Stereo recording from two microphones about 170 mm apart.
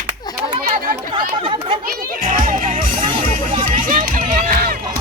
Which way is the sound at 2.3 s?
50° right (ahead or behind).